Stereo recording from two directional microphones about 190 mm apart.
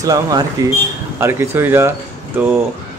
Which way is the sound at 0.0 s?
20° right (ahead or behind).